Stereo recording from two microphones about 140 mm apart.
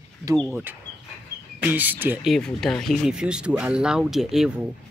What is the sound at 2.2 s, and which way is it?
Speech, 5° left (ahead or behind).